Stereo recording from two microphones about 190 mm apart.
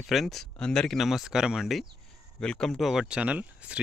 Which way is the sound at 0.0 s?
Centre (ahead or behind).